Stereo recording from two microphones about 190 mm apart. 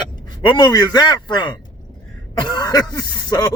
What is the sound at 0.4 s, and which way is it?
Speech, 25° left (ahead or behind).